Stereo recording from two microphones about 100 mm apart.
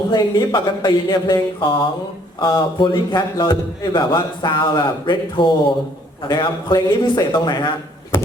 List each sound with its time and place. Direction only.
0.1 s a man's voice: 50° left (ahead or behind)
7.3 s speech: 55° left (ahead or behind)